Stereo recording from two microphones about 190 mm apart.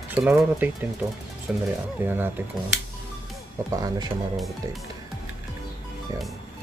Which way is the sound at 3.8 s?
20° right (ahead or behind).